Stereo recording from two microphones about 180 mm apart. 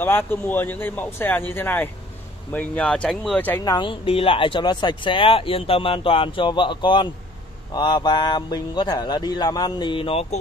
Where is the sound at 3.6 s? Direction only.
25° left (ahead or behind).